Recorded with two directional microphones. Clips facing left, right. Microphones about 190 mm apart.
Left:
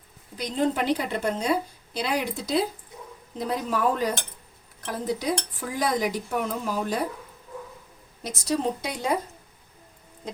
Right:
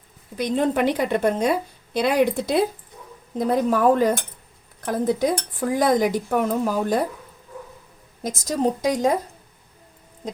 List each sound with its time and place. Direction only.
0.3 s a woman's voice: 55° right (ahead or behind)
8.2 s a woman's voice: 45° right (ahead or behind)